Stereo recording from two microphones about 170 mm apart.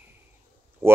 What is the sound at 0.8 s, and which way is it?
Speech, 15° right (ahead or behind).